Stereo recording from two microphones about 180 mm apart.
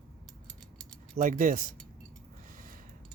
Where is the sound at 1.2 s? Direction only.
45° right (ahead or behind).